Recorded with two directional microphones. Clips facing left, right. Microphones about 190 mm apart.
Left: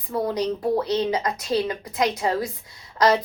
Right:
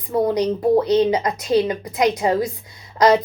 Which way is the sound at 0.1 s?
20° right (ahead or behind).